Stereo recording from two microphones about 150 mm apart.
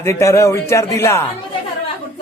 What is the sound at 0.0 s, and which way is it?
Speech, 20° left (ahead or behind).